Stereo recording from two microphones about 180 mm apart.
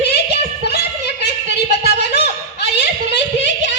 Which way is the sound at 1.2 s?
70° left (ahead or behind).